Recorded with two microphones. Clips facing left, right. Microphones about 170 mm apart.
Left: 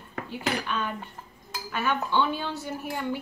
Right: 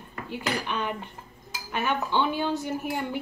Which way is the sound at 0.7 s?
15° right (ahead or behind).